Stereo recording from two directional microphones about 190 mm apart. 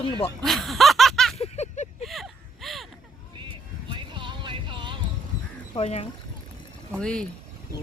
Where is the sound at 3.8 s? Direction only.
25° right (ahead or behind).